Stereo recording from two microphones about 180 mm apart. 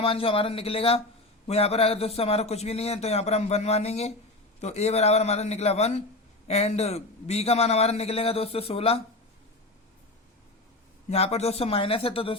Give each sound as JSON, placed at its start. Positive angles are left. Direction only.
{"t": 0.0, "sound": "a man's voice", "side_deg": 30}
{"t": 11.1, "sound": "a man's voice", "side_deg": 35}